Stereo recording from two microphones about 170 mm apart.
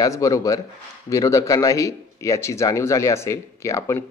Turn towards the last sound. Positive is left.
turn(degrees=15)  # may be behind; listen again after turning